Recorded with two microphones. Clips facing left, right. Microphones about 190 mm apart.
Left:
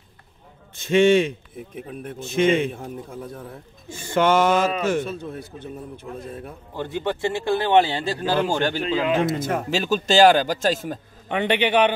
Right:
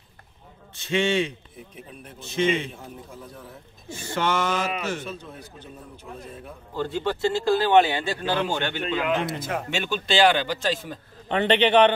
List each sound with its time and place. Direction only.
0.7 s speech: 45° left (ahead or behind)
4.0 s speech: 50° left (ahead or behind)
6.8 s speech: 20° left (ahead or behind)
9.2 s speech: 45° left (ahead or behind)
11.2 s a man's voice: 10° left (ahead or behind)